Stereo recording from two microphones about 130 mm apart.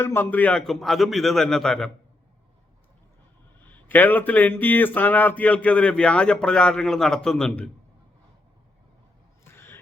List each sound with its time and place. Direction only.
0.0 s a man's voice: 15° left (ahead or behind)
3.6 s speech: 15° left (ahead or behind)
9.4 s a sound: 20° left (ahead or behind)